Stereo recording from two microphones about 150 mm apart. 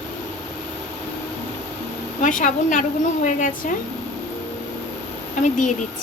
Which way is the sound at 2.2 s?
60° left (ahead or behind).